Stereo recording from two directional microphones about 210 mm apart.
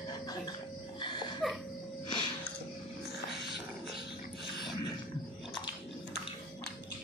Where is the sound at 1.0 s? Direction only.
20° left (ahead or behind).